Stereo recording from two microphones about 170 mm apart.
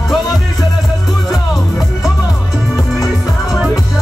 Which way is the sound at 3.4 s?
5° right (ahead or behind).